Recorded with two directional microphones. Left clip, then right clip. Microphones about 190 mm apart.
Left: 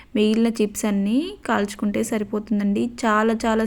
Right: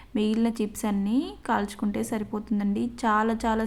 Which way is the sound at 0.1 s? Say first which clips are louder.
Left 7 dB; 15° left (ahead or behind).